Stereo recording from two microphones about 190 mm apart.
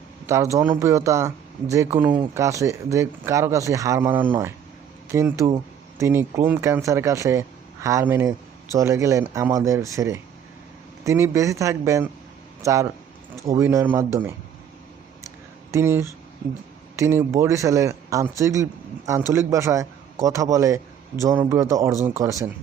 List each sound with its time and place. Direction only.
0.3 s speech: 15° right (ahead or behind)
15.7 s speech: 15° right (ahead or behind)